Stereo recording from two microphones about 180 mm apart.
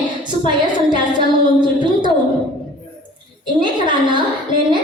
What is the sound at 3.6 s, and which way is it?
A woman's voice, 25° right (ahead or behind).